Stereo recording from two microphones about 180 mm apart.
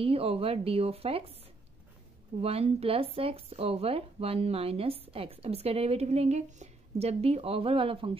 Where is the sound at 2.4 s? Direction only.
35° right (ahead or behind).